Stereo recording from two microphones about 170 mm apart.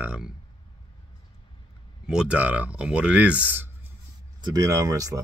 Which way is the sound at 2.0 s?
5° right (ahead or behind).